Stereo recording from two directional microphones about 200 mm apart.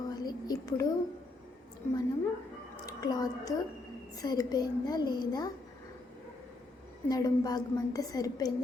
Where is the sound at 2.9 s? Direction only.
20° left (ahead or behind).